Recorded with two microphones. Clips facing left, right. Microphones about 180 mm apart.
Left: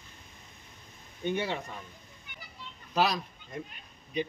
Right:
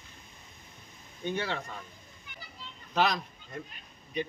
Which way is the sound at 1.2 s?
15° left (ahead or behind).